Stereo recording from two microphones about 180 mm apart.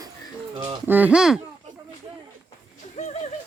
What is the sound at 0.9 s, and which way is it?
Speech, 10° right (ahead or behind).